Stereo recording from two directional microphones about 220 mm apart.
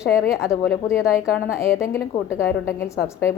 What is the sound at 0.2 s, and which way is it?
Speech, centre (ahead or behind).